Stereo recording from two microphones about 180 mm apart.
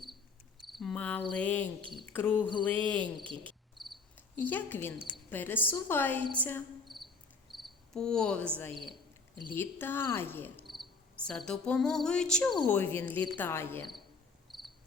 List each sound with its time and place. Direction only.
0.6 s cricket: centre (ahead or behind)
1.3 s speech: 10° left (ahead or behind)
3.0 s speech: 25° right (ahead or behind)
3.8 s cricket: centre (ahead or behind)
5.3 s speech: 10° left (ahead or behind)
6.8 s cricket: centre (ahead or behind)
8.7 s cricket: 25° right (ahead or behind)
9.5 s speech: 10° left (ahead or behind)
10.7 s cricket: centre (ahead or behind)
12.6 s speech: 10° left (ahead or behind)
14.5 s cricket: centre (ahead or behind)